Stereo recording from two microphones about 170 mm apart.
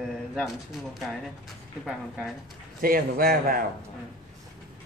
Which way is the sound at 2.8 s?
55° right (ahead or behind).